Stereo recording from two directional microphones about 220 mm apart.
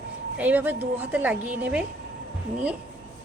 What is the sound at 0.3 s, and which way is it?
A woman's voice, 5° right (ahead or behind).